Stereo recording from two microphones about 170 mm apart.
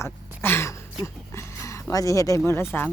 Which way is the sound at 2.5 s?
15° left (ahead or behind).